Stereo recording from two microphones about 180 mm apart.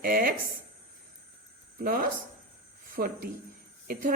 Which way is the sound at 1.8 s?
55° right (ahead or behind).